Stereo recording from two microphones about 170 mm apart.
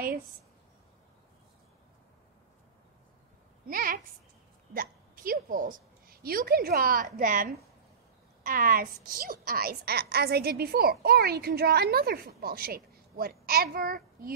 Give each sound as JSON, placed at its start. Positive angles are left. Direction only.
{"t": 3.6, "sound": "a sound", "side_deg": -55}
{"t": 4.7, "sound": "a woman's voice", "side_deg": -55}
{"t": 8.5, "sound": "a woman's voice", "side_deg": -55}